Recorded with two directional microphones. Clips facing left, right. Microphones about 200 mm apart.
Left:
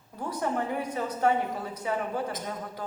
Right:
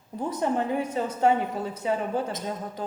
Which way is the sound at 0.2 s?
20° right (ahead or behind).